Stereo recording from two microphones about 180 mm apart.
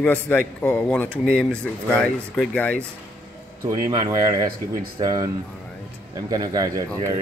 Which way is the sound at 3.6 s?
20° right (ahead or behind).